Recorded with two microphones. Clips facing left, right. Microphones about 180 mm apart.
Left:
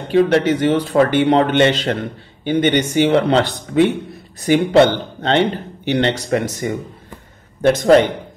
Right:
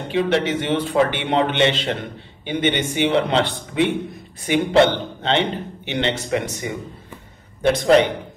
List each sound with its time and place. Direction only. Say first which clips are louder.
0.1 s a man's voice: left 6 dB; 40° left (ahead or behind)